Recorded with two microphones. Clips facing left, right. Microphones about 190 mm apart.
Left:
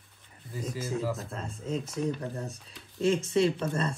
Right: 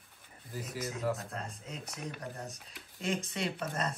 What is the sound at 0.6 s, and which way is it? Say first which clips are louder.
Speech: left 5 dB; centre (ahead or behind).